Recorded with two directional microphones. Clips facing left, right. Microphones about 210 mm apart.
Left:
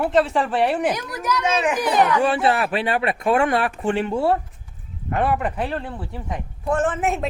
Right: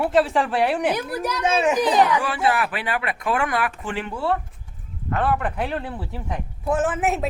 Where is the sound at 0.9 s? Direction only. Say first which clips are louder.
Even; 30° right (ahead or behind).